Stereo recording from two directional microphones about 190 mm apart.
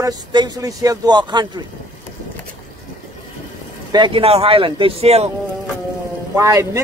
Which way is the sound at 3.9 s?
25° right (ahead or behind).